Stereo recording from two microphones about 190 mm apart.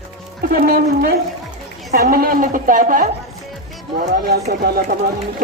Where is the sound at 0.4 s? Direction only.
50° right (ahead or behind).